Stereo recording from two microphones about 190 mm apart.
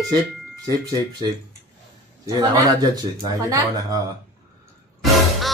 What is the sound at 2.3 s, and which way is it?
Speech, 20° right (ahead or behind).